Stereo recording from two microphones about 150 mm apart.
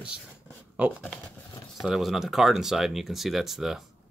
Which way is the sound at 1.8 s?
Centre (ahead or behind).